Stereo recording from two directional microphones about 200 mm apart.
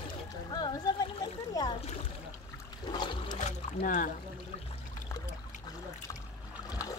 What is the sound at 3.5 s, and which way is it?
Rowboat, 40° left (ahead or behind).